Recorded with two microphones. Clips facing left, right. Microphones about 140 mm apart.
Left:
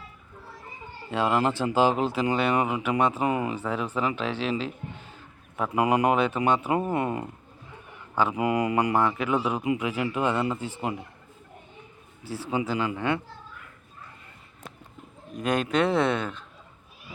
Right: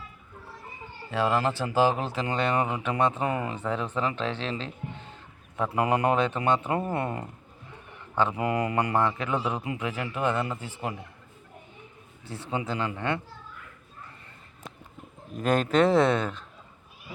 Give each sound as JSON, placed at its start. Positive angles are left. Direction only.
{"t": 1.1, "sound": "a man's voice", "side_deg": 20}
{"t": 5.7, "sound": "a man's voice", "side_deg": 15}
{"t": 12.8, "sound": "a man's voice", "side_deg": 10}
{"t": 15.3, "sound": "a man's voice", "side_deg": 0}